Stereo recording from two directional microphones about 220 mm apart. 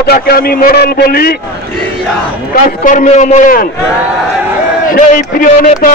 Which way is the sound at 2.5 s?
35° left (ahead or behind).